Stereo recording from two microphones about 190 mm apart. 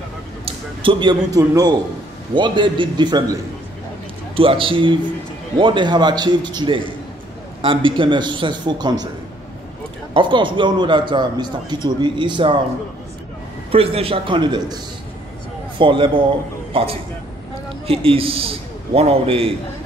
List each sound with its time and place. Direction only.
0.8 s a man's voice: 25° right (ahead or behind)
4.4 s a man's voice: 30° right (ahead or behind)
10.1 s a man's voice: 25° right (ahead or behind)
13.7 s a man's voice: 30° right (ahead or behind)
15.8 s a man's voice: 25° right (ahead or behind)